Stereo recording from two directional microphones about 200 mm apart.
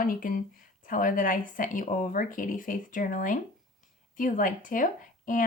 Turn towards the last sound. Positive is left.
turn(degrees=40)  # may be behind; listen again after turning